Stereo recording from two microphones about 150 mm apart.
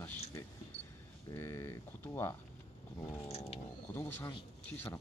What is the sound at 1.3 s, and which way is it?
Speech, 20° left (ahead or behind).